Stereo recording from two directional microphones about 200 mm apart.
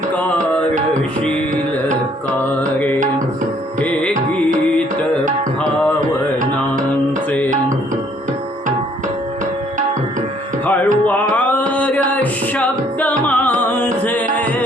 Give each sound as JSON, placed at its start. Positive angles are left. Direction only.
{"t": 0.2, "sound": "music", "side_deg": 5}
{"t": 2.4, "sound": "music", "side_deg": 10}
{"t": 11.0, "sound": "music", "side_deg": 10}